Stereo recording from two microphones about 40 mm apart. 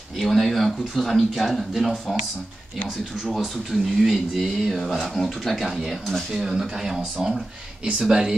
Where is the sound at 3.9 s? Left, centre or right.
Centre.